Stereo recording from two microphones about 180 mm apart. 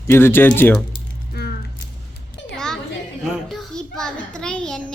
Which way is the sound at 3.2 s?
Centre (ahead or behind).